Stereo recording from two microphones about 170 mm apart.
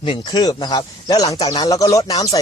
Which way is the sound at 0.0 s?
30° left (ahead or behind).